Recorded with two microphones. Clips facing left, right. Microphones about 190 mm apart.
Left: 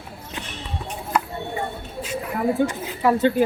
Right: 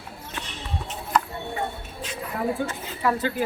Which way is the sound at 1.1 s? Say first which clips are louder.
Even; 10° left (ahead or behind).